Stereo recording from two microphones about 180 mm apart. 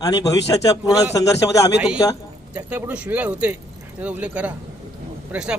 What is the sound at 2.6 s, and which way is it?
Speech, 10° right (ahead or behind).